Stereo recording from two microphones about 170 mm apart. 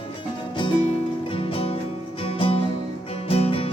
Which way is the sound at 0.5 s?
30° left (ahead or behind).